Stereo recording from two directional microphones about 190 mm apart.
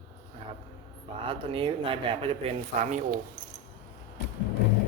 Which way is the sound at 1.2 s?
25° right (ahead or behind).